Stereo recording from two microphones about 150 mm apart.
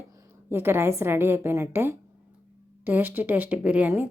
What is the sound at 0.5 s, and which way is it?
Speech, 15° right (ahead or behind).